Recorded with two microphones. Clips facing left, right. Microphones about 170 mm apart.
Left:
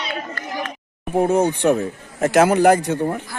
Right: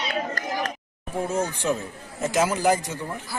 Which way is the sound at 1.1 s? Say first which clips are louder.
Left 9 dB; 65° left (ahead or behind).